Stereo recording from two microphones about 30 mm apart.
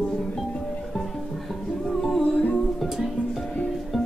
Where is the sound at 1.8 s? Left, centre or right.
Centre.